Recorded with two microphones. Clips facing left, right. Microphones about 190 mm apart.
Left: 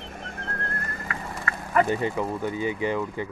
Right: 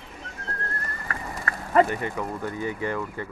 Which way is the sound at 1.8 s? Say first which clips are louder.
Left 4 dB; 20° left (ahead or behind).